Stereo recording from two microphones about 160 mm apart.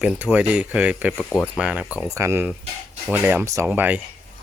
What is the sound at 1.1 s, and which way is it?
Speech, 10° left (ahead or behind).